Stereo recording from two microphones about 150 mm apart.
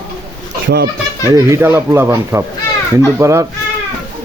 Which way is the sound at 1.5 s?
20° right (ahead or behind).